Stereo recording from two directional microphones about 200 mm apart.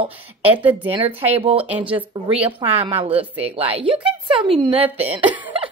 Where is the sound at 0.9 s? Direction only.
30° right (ahead or behind).